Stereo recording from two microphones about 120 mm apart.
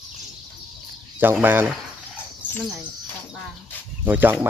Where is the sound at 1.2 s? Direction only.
15° right (ahead or behind).